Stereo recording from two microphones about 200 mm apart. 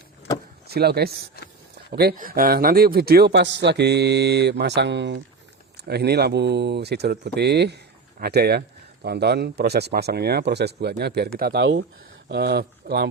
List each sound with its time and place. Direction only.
0.7 s speech: 50° right (ahead or behind)
12.3 s speech: 55° right (ahead or behind)